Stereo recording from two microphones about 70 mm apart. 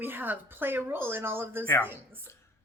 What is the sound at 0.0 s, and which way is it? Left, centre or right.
A woman's voice, right.